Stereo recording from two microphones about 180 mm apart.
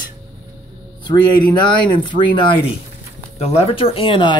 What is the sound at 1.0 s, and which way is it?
Speech, 25° left (ahead or behind).